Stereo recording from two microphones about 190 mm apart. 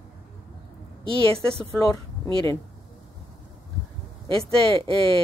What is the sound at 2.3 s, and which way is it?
Speech, 25° right (ahead or behind).